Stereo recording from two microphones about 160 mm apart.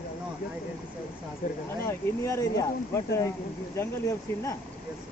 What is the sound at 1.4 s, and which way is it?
Speech, 55° left (ahead or behind).